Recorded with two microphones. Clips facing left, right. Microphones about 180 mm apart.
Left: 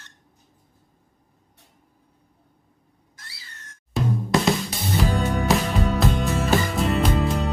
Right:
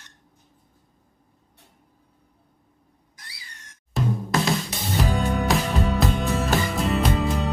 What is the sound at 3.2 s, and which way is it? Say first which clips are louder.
Cat: left 1 dB; 15° right (ahead or behind).